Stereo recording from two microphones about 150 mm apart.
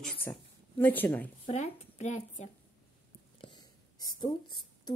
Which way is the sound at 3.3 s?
30° left (ahead or behind).